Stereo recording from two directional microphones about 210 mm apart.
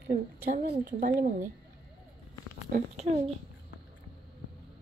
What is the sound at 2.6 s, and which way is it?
Speech, 35° right (ahead or behind).